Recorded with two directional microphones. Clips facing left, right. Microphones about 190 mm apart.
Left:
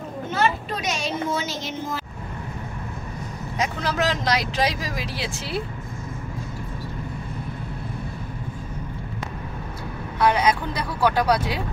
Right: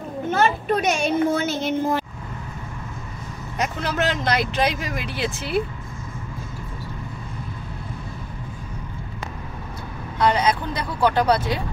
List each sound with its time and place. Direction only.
0.3 s a child's voice: 55° right (ahead or behind)
3.8 s speech: centre (ahead or behind)
4.4 s speech: 60° right (ahead or behind)
10.1 s speech: 10° left (ahead or behind)